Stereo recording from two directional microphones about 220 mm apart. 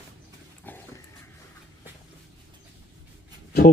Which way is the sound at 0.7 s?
10° left (ahead or behind).